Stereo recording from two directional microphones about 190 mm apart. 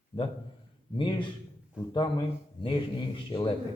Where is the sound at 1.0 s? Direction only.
25° left (ahead or behind).